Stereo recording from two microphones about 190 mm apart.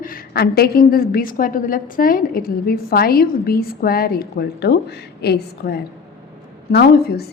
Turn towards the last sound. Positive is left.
turn(degrees=55)  # may be behind; listen again after turning